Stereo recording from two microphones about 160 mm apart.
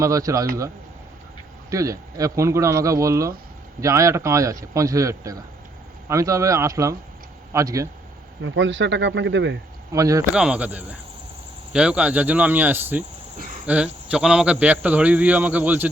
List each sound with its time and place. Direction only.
0.0 s speech: 20° right (ahead or behind)
1.7 s speech: 20° right (ahead or behind)
9.2 s speech: 90° right
9.9 s speech: 20° right (ahead or behind)
10.3 s a man's voice: 5° right (ahead or behind)